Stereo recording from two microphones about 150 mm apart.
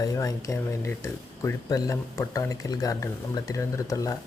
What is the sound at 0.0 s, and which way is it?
Speech, 25° left (ahead or behind).